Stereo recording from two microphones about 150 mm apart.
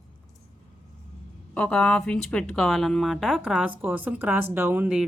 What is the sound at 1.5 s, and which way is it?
Speech, 10° left (ahead or behind).